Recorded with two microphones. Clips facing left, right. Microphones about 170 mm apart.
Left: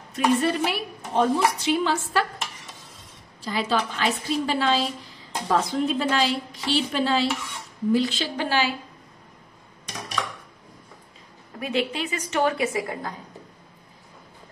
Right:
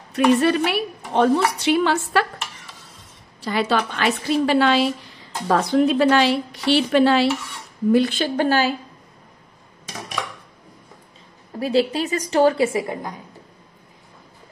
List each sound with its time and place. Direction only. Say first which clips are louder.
0.1 s a woman's voice: right 5 dB; 70° right (ahead or behind)
3.3 s a woman's voice: right 4 dB; 70° right (ahead or behind); by 8.7 s 45° right (ahead or behind)
11.6 s a woman's voice: right 7 dB; 35° right (ahead or behind)